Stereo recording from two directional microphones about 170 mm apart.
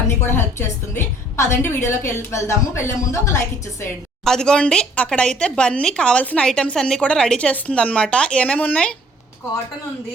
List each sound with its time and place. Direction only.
0.3 s a woman's voice: 15° left (ahead or behind)
4.3 s speech: 5° left (ahead or behind)